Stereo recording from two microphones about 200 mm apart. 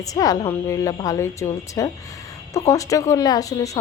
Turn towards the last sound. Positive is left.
turn(degrees=15)  # may be behind; listen again after turning